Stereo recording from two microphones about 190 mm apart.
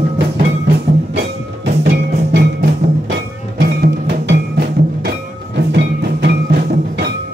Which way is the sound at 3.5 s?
60° right (ahead or behind).